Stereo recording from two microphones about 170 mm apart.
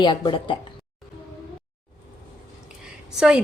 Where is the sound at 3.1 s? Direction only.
5° right (ahead or behind).